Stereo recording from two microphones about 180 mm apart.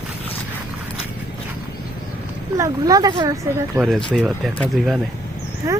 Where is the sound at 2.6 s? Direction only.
20° right (ahead or behind).